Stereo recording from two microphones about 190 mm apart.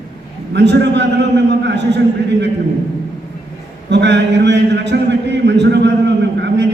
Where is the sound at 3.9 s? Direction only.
65° right (ahead or behind).